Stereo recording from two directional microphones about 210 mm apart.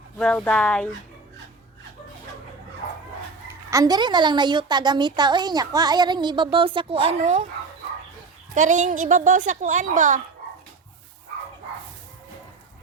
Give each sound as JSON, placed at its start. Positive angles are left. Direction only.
{"t": 0.2, "sound": "speech", "side_deg": 5}
{"t": 3.7, "sound": "a woman's voice", "side_deg": -15}
{"t": 8.5, "sound": "a woman's voice", "side_deg": -35}